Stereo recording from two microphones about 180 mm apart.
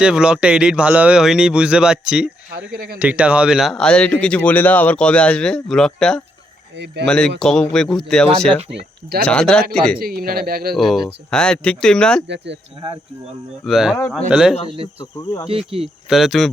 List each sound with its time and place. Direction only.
0.0 s speech: 5° right (ahead or behind)
6.7 s speech: 70° right (ahead or behind)
7.0 s speech: 5° left (ahead or behind)
8.7 s speech: 60° right (ahead or behind)
9.2 s speech: 5° left (ahead or behind)
10.0 s speech: 55° right (ahead or behind)
10.8 s speech: centre (ahead or behind)
13.7 s speech: centre (ahead or behind)
15.4 s speech: 30° right (ahead or behind)
16.0 s speech: centre (ahead or behind)